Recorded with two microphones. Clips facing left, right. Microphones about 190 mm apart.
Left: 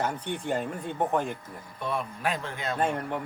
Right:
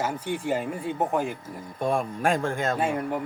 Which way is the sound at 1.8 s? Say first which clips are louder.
Right 6 dB; 45° right (ahead or behind).